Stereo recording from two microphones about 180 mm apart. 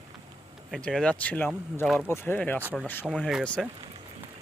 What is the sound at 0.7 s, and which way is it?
Speech, 5° left (ahead or behind).